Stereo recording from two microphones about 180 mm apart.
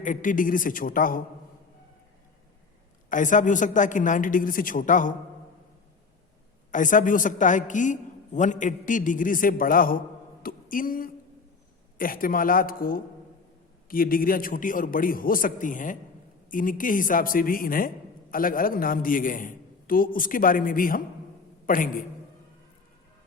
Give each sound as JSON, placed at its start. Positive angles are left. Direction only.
{"t": 0.0, "sound": "a man's voice", "side_deg": 45}
{"t": 3.1, "sound": "a man's voice", "side_deg": 45}
{"t": 6.7, "sound": "a man's voice", "side_deg": 45}
{"t": 10.4, "sound": "a sound", "side_deg": 50}
{"t": 11.9, "sound": "a man's voice", "side_deg": 50}